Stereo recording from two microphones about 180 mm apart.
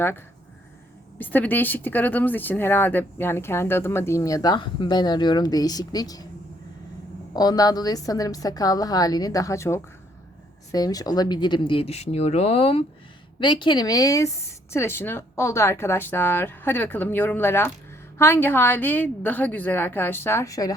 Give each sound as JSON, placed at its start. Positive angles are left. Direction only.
{"t": 1.2, "sound": "speech", "side_deg": 10}
{"t": 7.3, "sound": "a woman's voice", "side_deg": 20}